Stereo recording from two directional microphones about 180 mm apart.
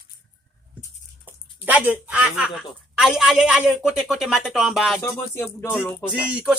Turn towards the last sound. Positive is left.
turn(degrees=-5)  # may be behind; listen again after turning